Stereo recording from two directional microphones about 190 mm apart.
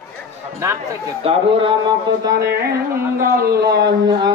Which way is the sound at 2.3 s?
55° right (ahead or behind).